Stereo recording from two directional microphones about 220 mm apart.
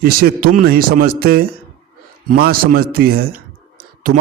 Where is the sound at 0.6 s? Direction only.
40° right (ahead or behind).